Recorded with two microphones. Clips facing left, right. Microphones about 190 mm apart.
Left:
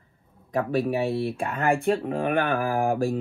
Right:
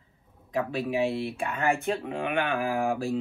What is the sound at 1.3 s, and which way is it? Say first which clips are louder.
Speech: left 3 dB; 35° left (ahead or behind).